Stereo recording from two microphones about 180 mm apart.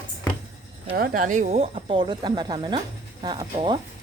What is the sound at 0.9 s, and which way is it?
A woman's voice, 50° right (ahead or behind).